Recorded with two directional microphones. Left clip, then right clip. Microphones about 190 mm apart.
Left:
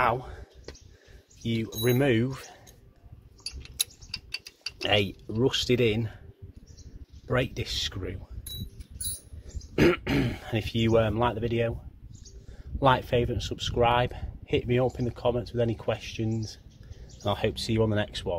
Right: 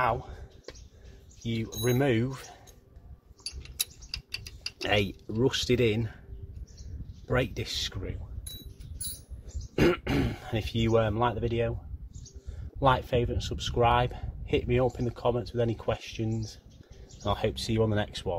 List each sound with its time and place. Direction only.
0.0 s a man's voice: 25° left (ahead or behind)
1.4 s speech: 15° left (ahead or behind)
4.7 s speech: centre (ahead or behind)
7.2 s speech: centre (ahead or behind)
7.9 s speech: 20° left (ahead or behind)
9.8 s speech: 10° left (ahead or behind)
12.8 s speech: 15° left (ahead or behind); by 18.3 s centre (ahead or behind)